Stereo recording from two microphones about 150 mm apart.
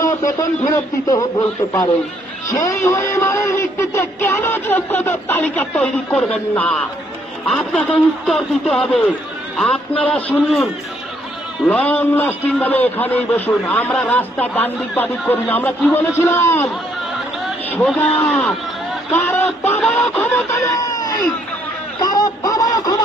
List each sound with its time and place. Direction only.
0.0 s a sound: 60° left (ahead or behind)
0.7 s a man's voice: 25° left (ahead or behind)
2.6 s a man's voice: 20° left (ahead or behind)
11.6 s a man's voice: 10° left (ahead or behind)
19.8 s a man's voice: centre (ahead or behind)
20.4 s a sound: 20° left (ahead or behind)